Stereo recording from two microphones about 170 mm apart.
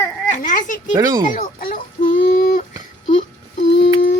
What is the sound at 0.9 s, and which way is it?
Speech, 20° right (ahead or behind).